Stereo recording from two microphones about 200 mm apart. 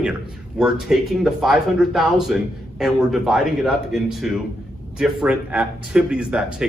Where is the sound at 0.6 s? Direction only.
Centre (ahead or behind).